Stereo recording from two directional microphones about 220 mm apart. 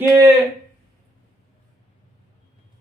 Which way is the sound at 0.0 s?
15° right (ahead or behind).